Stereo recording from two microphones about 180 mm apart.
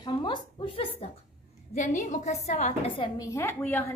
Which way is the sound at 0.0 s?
25° left (ahead or behind).